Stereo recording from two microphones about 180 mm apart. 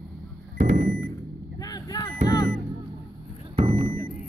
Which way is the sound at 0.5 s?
45° right (ahead or behind).